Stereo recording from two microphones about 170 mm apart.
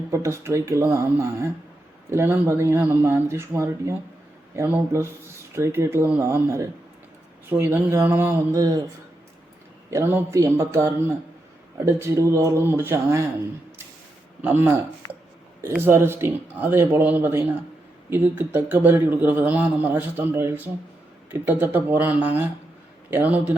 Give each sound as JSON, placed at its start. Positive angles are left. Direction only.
{"t": 0.1, "sound": "a man's voice", "side_deg": -15}
{"t": 9.9, "sound": "a man's voice", "side_deg": -10}
{"t": 14.4, "sound": "a man's voice", "side_deg": -10}
{"t": 15.8, "sound": "a man's voice", "side_deg": -15}